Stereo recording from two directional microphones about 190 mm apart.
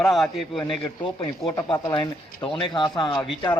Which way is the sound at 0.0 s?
Centre (ahead or behind).